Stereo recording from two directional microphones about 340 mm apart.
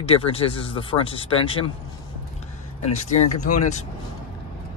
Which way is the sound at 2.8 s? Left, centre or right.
Centre.